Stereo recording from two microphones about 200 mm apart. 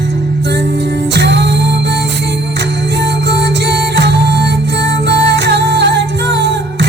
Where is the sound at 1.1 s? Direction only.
60° right (ahead or behind).